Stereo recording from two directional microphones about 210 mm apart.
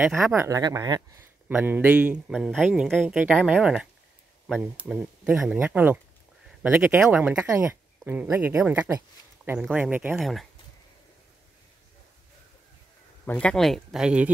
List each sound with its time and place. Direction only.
0.0 s speech: centre (ahead or behind)
0.3 s speech: 15° right (ahead or behind)
13.2 s speech: 5° left (ahead or behind)